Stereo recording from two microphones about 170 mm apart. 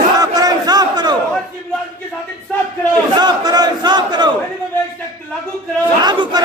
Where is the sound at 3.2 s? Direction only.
25° right (ahead or behind).